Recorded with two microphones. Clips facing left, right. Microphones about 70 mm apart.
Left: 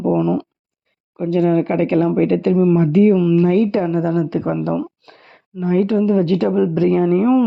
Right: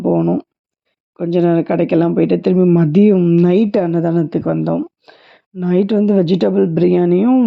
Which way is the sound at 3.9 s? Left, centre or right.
Right.